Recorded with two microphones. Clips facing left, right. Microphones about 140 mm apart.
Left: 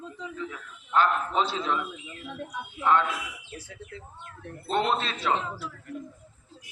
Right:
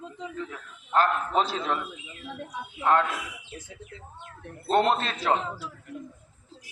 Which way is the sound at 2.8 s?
40° right (ahead or behind).